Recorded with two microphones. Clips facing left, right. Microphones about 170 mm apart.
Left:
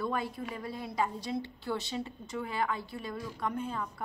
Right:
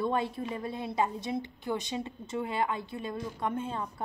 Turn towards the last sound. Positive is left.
turn(degrees=-25)  # may be behind; listen again after turning